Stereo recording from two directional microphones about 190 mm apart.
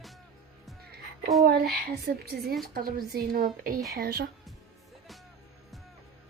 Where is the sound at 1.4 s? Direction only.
55° right (ahead or behind).